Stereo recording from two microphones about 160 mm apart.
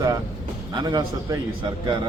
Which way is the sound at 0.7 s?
25° right (ahead or behind).